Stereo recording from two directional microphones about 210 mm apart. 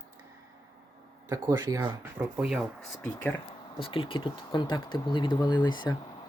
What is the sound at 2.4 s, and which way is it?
Speech, 5° right (ahead or behind).